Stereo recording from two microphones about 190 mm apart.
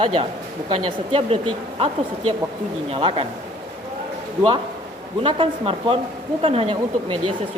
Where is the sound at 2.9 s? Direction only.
25° right (ahead or behind).